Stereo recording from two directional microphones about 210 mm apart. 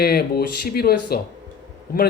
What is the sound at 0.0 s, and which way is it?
Speech, 50° left (ahead or behind).